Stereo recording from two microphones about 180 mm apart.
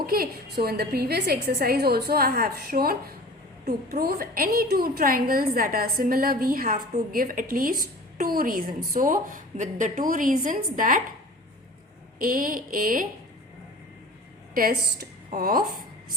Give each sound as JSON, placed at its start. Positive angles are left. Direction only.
{"t": 0.0, "sound": "a woman's voice", "side_deg": -55}
{"t": 12.2, "sound": "a woman's voice", "side_deg": -50}
{"t": 15.3, "sound": "a woman's voice", "side_deg": -55}